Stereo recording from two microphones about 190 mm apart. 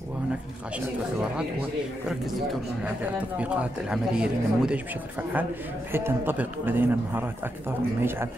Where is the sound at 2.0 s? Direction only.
Centre (ahead or behind).